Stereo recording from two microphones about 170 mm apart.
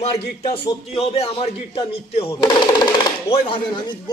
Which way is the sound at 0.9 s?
35° left (ahead or behind).